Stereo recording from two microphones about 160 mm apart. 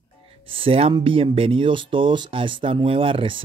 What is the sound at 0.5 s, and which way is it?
Speech, 35° right (ahead or behind).